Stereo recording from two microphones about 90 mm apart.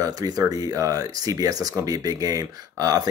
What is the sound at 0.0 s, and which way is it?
Speech, 45° right (ahead or behind).